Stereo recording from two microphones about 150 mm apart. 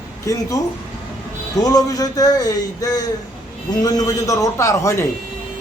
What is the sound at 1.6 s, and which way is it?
A man's voice, 25° left (ahead or behind).